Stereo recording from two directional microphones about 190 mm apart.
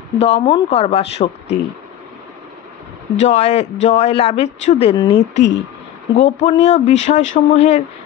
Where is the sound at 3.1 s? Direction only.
35° left (ahead or behind).